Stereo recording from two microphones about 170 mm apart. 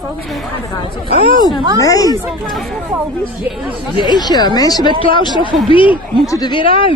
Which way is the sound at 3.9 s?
25° left (ahead or behind).